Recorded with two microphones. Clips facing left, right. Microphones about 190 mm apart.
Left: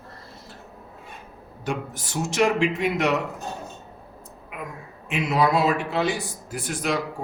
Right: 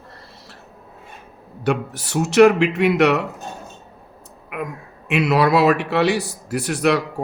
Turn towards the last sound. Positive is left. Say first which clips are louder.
# right 8 dB
turn(degrees=-70)  # may be behind; listen again after turning